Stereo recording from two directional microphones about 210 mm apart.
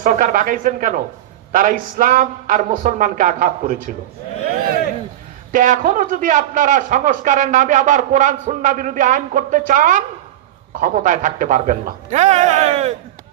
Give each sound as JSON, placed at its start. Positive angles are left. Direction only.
{"t": 0.0, "sound": "a man's voice", "side_deg": -40}
{"t": 5.5, "sound": "a man's voice", "side_deg": -40}